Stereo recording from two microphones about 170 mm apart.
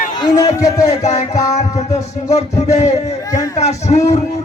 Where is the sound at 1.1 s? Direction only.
45° left (ahead or behind).